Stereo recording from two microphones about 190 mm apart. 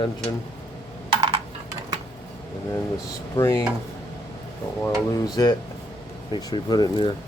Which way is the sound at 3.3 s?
15° left (ahead or behind).